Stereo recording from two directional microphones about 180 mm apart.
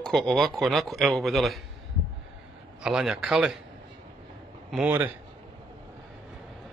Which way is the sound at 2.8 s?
5° right (ahead or behind).